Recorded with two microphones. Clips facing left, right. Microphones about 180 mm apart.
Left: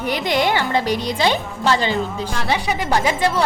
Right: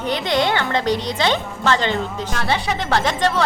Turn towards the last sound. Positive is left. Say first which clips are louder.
# left 1 dB
turn(degrees=10)  # may be behind; listen again after turning